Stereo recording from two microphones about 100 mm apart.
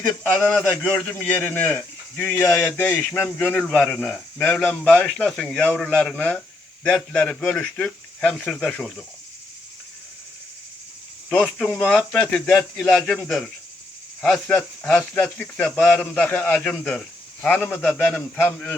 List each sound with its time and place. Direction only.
0.4 s speech: 15° left (ahead or behind)
2.5 s a man's voice: 20° left (ahead or behind)
4.4 s speech: 15° left (ahead or behind)
11.3 s a man's voice: 5° left (ahead or behind)